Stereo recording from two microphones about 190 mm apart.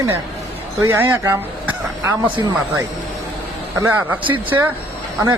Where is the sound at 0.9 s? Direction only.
10° right (ahead or behind).